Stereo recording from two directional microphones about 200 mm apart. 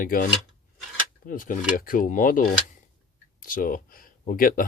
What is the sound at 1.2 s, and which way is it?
Speech, 45° left (ahead or behind).